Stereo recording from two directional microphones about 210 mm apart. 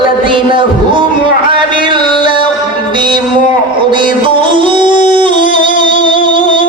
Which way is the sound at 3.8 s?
25° right (ahead or behind).